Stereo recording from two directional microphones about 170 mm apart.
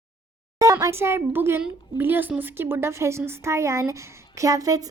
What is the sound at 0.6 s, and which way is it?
A woman's voice, 20° right (ahead or behind).